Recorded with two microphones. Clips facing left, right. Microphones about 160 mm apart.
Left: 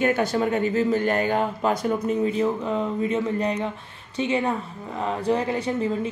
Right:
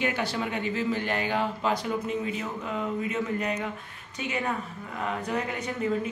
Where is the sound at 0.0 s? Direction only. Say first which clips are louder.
Left 7 dB; 45° left (ahead or behind).